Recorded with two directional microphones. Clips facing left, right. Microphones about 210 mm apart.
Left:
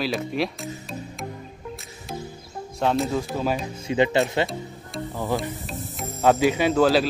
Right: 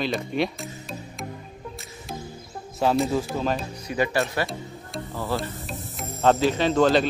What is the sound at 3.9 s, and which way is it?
Speech, 20° left (ahead or behind).